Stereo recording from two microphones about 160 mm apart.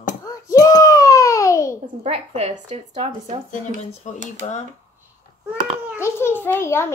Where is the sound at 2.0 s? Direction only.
40° right (ahead or behind).